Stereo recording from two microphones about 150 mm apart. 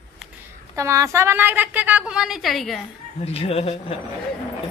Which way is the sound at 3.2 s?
40° left (ahead or behind).